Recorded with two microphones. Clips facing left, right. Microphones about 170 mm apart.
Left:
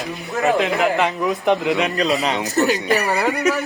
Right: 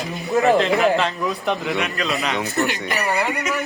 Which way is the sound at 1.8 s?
35° left (ahead or behind).